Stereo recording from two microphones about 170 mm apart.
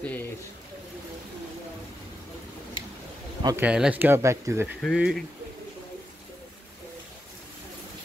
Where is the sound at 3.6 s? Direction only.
5° right (ahead or behind).